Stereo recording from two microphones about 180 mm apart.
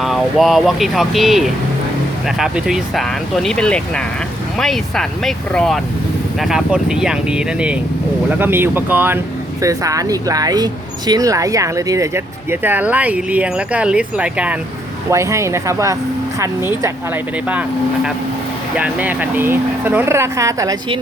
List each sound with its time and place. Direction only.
0.0 s speech: centre (ahead or behind); by 20.7 s 15° right (ahead or behind)